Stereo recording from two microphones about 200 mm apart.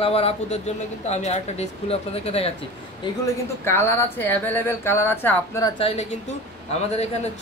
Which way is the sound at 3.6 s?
10° left (ahead or behind).